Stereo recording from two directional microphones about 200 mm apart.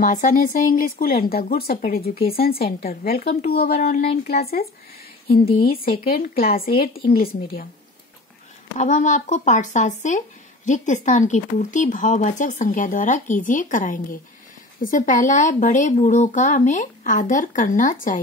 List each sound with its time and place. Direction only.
0.0 s speech: 40° left (ahead or behind)
3.8 s speech: 35° left (ahead or behind)
4.3 s speech: 50° left (ahead or behind)
8.7 s speech: 40° left (ahead or behind)